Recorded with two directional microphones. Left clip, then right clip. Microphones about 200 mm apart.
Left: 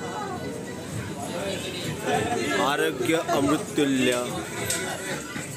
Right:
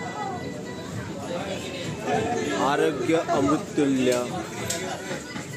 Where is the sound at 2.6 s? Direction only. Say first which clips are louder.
Right 4 dB; centre (ahead or behind).